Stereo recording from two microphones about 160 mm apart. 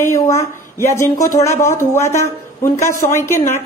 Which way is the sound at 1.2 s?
55° left (ahead or behind).